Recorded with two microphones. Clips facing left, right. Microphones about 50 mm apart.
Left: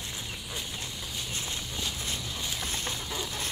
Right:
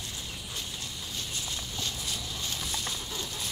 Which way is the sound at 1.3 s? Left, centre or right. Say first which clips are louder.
Left 1 dB; left.